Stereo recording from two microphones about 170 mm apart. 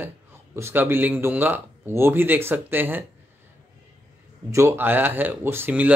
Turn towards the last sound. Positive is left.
turn(degrees=-10)  # may be behind; listen again after turning